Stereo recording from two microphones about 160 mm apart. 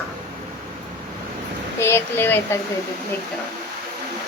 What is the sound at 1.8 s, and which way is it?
Speech, 15° left (ahead or behind).